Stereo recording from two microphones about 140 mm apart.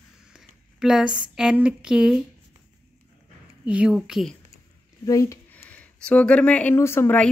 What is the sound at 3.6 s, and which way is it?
Speech, 5° right (ahead or behind).